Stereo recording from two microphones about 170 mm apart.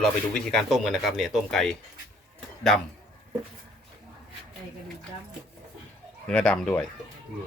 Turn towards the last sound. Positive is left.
turn(degrees=5)  # may be behind; listen again after turning